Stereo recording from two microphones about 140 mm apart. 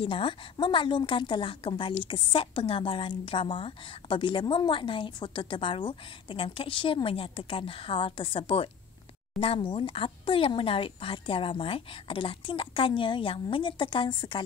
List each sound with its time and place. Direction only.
0.0 s a woman's voice: 40° left (ahead or behind)